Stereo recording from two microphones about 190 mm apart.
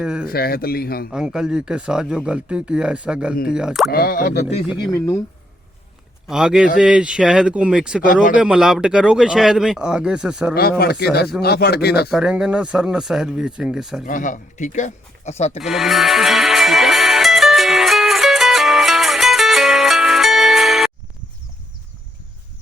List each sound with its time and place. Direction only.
0.0 s speech: 5° right (ahead or behind)
0.3 s speech: 55° left (ahead or behind)
1.1 s speech: 5° right (ahead or behind)
3.9 s speech: 50° left (ahead or behind)
4.8 s speech: 15° left (ahead or behind)
6.2 s speech: 5° right (ahead or behind)
8.0 s speech: 45° left (ahead or behind)
8.4 s speech: 5° right (ahead or behind)
10.5 s speech: 55° left (ahead or behind)
12.1 s speech: 5° right (ahead or behind)
14.0 s speech: 45° left (ahead or behind)
15.6 s music: centre (ahead or behind)